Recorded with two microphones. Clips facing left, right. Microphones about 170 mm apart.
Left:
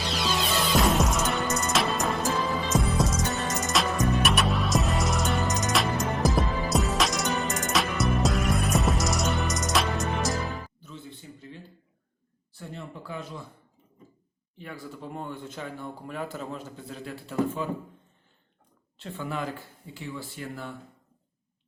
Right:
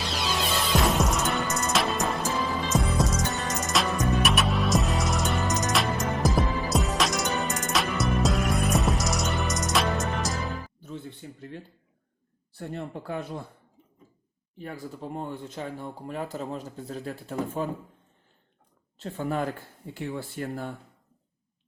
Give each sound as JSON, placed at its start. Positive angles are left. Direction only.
{"t": 0.7, "sound": "music", "side_deg": 0}
{"t": 10.8, "sound": "a sound", "side_deg": -55}
{"t": 12.5, "sound": "speech", "side_deg": -55}
{"t": 14.6, "sound": "speech", "side_deg": -35}
{"t": 18.9, "sound": "speech", "side_deg": -40}